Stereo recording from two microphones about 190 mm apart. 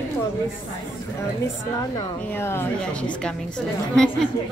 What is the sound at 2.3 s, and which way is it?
Speech, 10° left (ahead or behind).